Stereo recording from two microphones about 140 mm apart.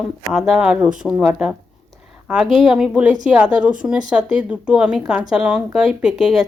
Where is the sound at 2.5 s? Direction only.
5° right (ahead or behind).